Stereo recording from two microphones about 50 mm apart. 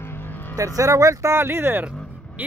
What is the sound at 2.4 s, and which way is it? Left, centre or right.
Vehicle, right.